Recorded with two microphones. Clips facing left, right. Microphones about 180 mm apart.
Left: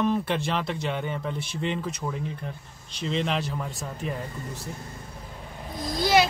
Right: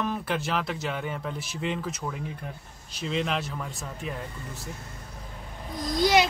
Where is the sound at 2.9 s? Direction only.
5° right (ahead or behind).